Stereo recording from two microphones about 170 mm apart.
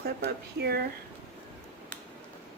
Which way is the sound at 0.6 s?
70° right (ahead or behind).